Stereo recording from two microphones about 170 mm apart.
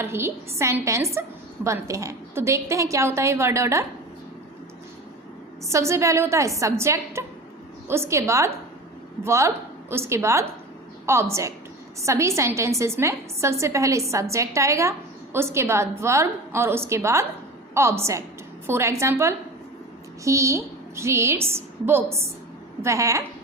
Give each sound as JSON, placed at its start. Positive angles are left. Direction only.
{"t": 0.0, "sound": "a woman's voice", "side_deg": -15}
{"t": 5.6, "sound": "a woman's voice", "side_deg": -15}